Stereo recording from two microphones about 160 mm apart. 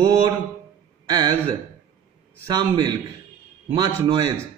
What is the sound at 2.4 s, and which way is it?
Speech, 30° right (ahead or behind).